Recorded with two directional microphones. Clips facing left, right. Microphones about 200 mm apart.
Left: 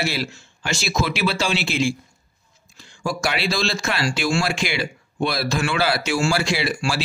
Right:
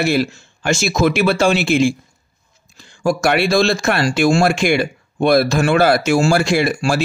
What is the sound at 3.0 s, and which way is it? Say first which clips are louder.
Speech: right 8 dB; 55° right (ahead or behind).